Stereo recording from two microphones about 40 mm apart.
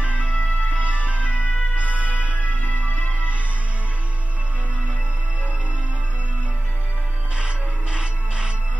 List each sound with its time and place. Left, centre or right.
0.2 s music: left
0.7 s music: right
2.6 s music: left
7.3 s music: right